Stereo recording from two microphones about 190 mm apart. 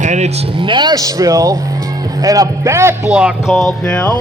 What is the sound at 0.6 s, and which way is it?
Speech, 25° right (ahead or behind).